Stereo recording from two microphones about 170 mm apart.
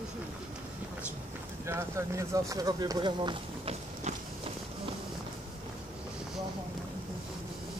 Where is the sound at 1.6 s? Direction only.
15° right (ahead or behind); by 4.1 s 35° right (ahead or behind).